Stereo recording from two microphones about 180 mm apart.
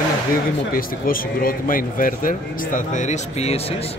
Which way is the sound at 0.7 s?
50° left (ahead or behind).